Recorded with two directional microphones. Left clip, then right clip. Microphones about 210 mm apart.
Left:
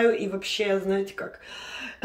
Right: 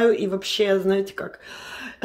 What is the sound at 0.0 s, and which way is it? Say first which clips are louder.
Speech: right 3 dB; 45° right (ahead or behind).